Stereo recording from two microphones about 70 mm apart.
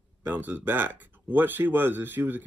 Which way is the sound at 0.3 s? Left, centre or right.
Right.